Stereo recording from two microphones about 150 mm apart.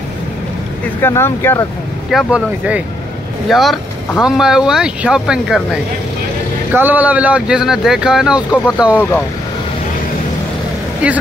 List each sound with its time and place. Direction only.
1.0 s speech: 15° left (ahead or behind)
2.0 s speech: 5° right (ahead or behind)
6.7 s speech: 10° right (ahead or behind)
11.0 s speech: 10° right (ahead or behind)